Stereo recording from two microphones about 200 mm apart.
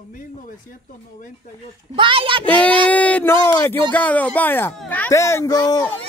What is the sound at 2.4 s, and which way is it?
A man's voice, 10° left (ahead or behind).